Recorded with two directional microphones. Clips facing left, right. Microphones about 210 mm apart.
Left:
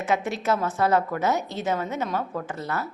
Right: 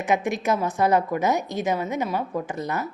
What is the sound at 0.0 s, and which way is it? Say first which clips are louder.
A woman's voice: right 2 dB; 15° right (ahead or behind).